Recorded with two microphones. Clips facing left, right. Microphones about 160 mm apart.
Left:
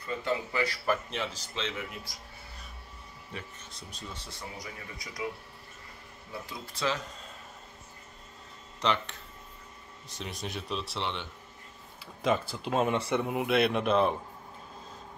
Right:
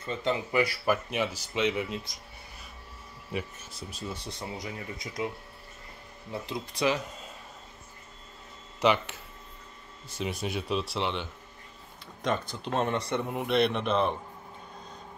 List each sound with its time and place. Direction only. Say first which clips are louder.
0.0 s speech: right 2 dB; 20° right (ahead or behind)
3.3 s speech: right 8 dB; 10° right (ahead or behind)
6.4 s speech: right 5 dB; 15° right (ahead or behind)
8.8 s speech: right 5 dB; 5° right (ahead or behind)